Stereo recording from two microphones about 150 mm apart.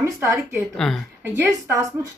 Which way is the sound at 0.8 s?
5° left (ahead or behind).